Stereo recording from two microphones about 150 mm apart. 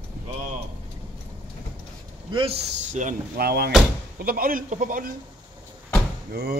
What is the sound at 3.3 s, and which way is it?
Speech, 90° right.